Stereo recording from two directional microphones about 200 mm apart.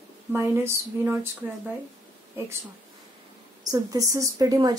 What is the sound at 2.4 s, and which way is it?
Speech, 10° right (ahead or behind).